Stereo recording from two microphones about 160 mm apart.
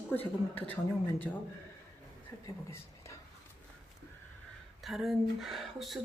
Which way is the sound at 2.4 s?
15° left (ahead or behind).